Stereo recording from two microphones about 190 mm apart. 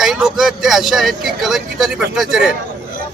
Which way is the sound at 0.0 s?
Centre (ahead or behind).